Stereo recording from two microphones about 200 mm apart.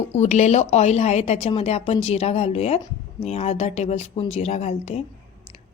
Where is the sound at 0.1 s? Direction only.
35° left (ahead or behind).